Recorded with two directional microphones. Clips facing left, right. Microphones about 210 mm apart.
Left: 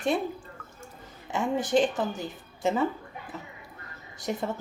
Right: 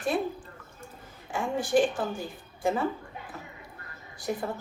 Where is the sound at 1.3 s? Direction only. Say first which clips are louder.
Left 1 dB; 20° left (ahead or behind).